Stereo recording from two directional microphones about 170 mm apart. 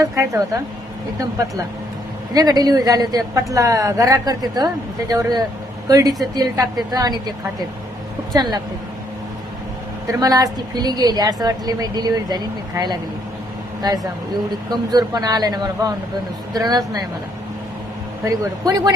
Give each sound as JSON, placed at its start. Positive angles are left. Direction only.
{"t": 0.0, "sound": "a woman's voice", "side_deg": -20}
{"t": 2.3, "sound": "a woman's voice", "side_deg": -20}
{"t": 8.3, "sound": "a woman's voice", "side_deg": -25}
{"t": 10.1, "sound": "a woman's voice", "side_deg": -20}
{"t": 14.7, "sound": "a woman's voice", "side_deg": -25}
{"t": 18.3, "sound": "a woman's voice", "side_deg": -25}